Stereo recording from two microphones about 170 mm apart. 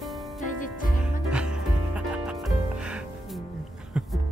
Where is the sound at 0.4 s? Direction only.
50° left (ahead or behind).